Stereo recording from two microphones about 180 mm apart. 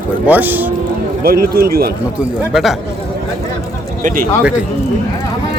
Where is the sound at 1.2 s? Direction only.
55° right (ahead or behind).